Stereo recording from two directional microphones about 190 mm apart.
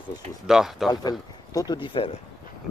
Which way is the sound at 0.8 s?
20° left (ahead or behind).